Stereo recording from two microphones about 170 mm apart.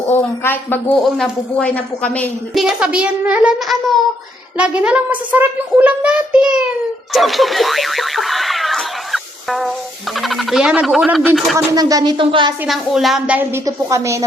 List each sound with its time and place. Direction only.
0.1 s speech: 10° left (ahead or behind)
2.6 s speech: 5° right (ahead or behind)
7.1 s music: centre (ahead or behind)
10.2 s speech: centre (ahead or behind)
11.5 s speech: 20° right (ahead or behind)
12.6 s speech: centre (ahead or behind); by 14.3 s 15° right (ahead or behind)